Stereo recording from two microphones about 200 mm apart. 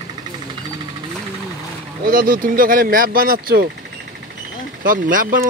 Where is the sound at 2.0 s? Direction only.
45° right (ahead or behind).